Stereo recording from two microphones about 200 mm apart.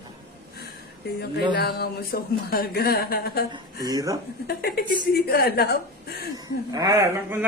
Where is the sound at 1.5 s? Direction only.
50° left (ahead or behind).